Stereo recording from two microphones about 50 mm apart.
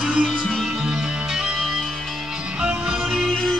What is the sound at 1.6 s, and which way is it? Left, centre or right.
Music, centre.